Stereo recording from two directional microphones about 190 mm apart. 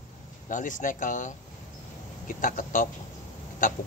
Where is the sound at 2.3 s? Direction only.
45° left (ahead or behind).